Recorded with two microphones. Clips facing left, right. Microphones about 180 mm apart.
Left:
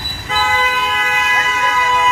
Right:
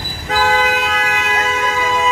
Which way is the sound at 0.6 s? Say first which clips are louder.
Right 2 dB; 75° right (ahead or behind).